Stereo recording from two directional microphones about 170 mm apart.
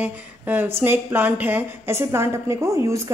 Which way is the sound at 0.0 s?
10° right (ahead or behind).